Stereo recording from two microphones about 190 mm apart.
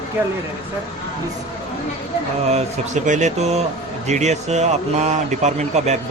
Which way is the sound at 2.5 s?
35° right (ahead or behind).